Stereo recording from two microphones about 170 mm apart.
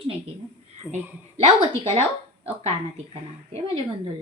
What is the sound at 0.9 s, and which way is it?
Speech, centre (ahead or behind).